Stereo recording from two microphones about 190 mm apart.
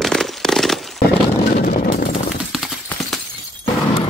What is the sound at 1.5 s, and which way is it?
Vehicle, 45° left (ahead or behind).